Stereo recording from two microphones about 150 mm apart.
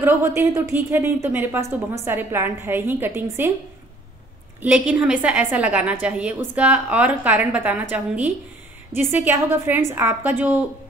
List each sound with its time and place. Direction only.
0.0 s a woman's voice: 15° right (ahead or behind)
4.6 s a woman's voice: 10° right (ahead or behind)